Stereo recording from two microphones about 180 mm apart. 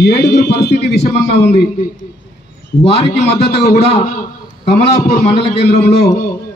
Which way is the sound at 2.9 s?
35° left (ahead or behind).